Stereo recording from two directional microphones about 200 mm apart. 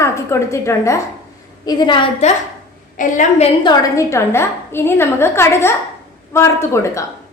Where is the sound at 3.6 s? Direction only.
15° left (ahead or behind).